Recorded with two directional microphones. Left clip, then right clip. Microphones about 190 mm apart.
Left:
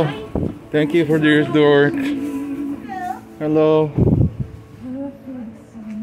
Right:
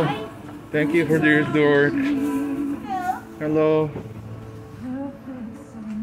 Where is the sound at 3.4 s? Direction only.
30° left (ahead or behind).